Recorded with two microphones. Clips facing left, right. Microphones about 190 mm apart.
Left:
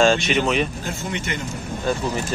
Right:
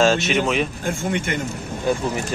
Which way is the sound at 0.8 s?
50° right (ahead or behind).